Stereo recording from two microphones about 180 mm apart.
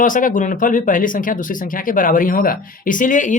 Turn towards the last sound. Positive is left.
turn(degrees=45)  # may be behind; listen again after turning